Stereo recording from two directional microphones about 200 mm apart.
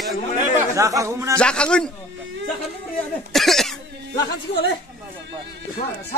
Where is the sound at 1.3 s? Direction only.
5° left (ahead or behind).